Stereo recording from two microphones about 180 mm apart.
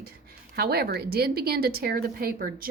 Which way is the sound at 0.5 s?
60° right (ahead or behind).